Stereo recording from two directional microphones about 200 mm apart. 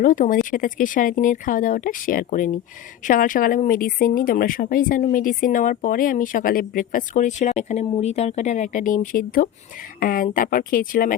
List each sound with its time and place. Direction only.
0.0 s speech: 40° left (ahead or behind)